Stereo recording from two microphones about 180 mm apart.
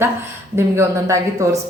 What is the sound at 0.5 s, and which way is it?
A woman's voice, 15° right (ahead or behind).